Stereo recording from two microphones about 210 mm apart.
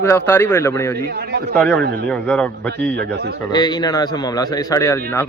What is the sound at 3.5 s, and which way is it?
Speech, 20° left (ahead or behind).